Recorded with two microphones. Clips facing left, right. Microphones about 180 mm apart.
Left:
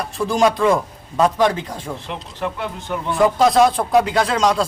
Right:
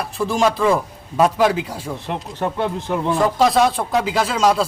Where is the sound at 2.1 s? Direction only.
35° right (ahead or behind).